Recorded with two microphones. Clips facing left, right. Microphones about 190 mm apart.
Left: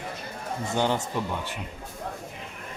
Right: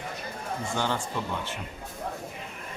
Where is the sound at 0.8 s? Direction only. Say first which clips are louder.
Left 5 dB; 15° left (ahead or behind).